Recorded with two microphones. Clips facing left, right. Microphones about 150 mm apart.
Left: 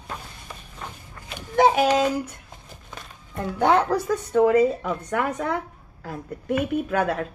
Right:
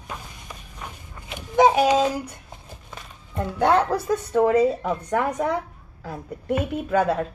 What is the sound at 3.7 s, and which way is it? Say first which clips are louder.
Speech: even; 10° right (ahead or behind).